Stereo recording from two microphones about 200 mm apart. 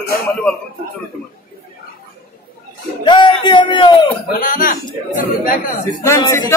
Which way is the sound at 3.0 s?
25° left (ahead or behind).